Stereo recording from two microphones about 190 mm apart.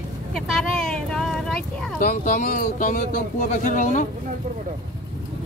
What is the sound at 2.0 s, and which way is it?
Speech, 45° left (ahead or behind).